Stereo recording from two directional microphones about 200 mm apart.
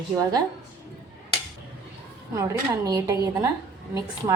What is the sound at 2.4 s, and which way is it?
Speech, 15° right (ahead or behind).